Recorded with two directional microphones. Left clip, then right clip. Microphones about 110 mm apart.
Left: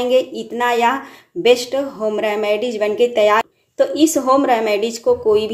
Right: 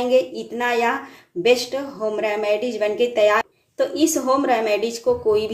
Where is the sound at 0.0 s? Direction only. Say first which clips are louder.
Left 2 dB; 30° left (ahead or behind).